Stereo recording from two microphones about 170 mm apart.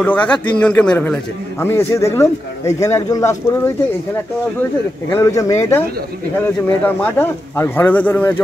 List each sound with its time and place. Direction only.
0.0 s a man's voice: 10° left (ahead or behind)
5.1 s a man's voice: 20° left (ahead or behind)